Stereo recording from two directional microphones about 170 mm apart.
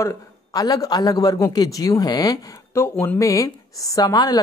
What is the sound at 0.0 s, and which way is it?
A man's voice, 20° left (ahead or behind).